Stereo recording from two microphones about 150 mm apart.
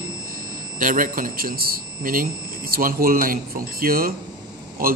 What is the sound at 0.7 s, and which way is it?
Speech, 65° right (ahead or behind).